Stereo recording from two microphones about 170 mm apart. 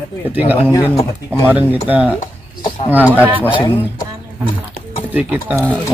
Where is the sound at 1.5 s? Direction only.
30° left (ahead or behind).